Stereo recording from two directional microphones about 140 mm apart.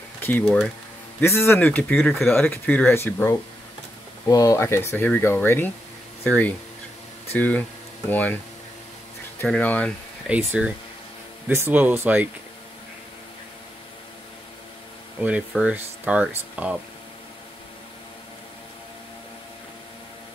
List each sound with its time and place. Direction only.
0.2 s speech: 15° left (ahead or behind)
2.0 s speech: centre (ahead or behind)
2.3 s speech: 15° left (ahead or behind)
9.5 s speech: 10° left (ahead or behind)
10.2 s speech: 10° right (ahead or behind)
15.5 s speech: 10° right (ahead or behind)